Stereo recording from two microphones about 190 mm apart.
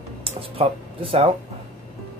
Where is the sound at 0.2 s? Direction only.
30° right (ahead or behind).